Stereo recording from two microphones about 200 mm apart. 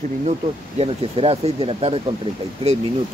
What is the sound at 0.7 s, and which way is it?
Speech, 30° right (ahead or behind).